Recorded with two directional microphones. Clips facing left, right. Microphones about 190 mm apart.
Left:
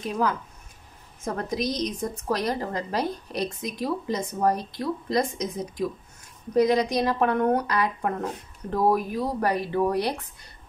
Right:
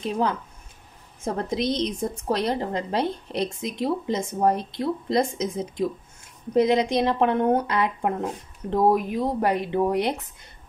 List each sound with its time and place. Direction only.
0.0 s a woman's voice: 25° right (ahead or behind)